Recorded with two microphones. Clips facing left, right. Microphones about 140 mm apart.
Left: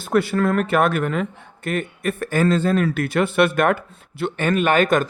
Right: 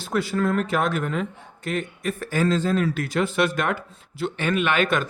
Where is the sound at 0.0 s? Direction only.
60° left (ahead or behind).